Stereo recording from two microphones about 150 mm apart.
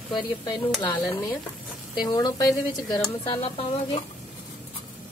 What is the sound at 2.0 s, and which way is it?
A woman's voice, 25° left (ahead or behind).